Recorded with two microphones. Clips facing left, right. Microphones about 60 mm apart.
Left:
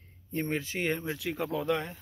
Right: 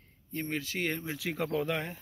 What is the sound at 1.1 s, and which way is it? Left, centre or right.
Speech, centre.